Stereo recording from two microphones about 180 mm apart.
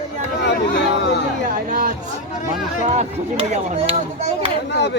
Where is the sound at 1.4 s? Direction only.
50° right (ahead or behind).